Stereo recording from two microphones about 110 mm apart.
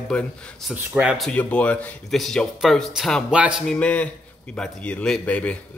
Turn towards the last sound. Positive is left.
turn(degrees=10)  # may be behind; listen again after turning